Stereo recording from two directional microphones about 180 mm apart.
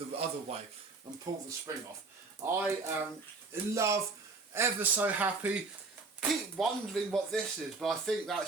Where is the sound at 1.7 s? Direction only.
20° right (ahead or behind).